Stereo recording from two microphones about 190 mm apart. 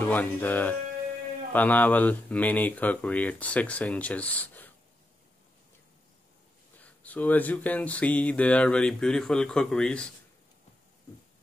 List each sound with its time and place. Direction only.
0.0 s speech: 10° left (ahead or behind)
6.8 s speech: 10° left (ahead or behind)